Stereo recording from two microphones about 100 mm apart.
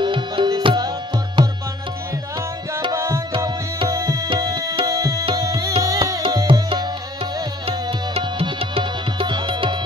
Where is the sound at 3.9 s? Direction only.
30° right (ahead or behind).